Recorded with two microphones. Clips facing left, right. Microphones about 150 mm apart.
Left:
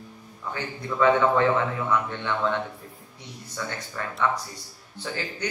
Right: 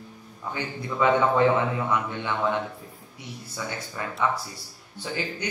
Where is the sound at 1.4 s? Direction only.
15° right (ahead or behind).